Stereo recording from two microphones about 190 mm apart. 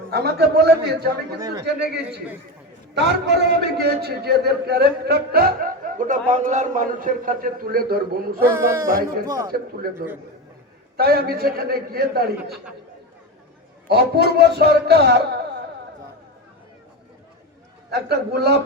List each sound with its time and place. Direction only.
0.1 s a man's voice: 55° right (ahead or behind)
1.4 s a man's voice: 20° right (ahead or behind)
2.9 s a man's voice: 60° right (ahead or behind)
8.4 s speech: 15° right (ahead or behind)
8.9 s a man's voice: 50° right (ahead or behind)
10.9 s a man's voice: 55° right (ahead or behind)
13.8 s a man's voice: 55° right (ahead or behind)
17.9 s a man's voice: 60° right (ahead or behind)